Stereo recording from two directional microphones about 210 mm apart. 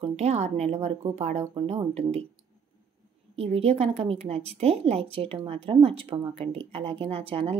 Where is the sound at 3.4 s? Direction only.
30° right (ahead or behind).